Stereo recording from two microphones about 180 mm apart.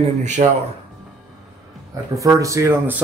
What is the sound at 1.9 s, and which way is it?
Speech, 15° right (ahead or behind).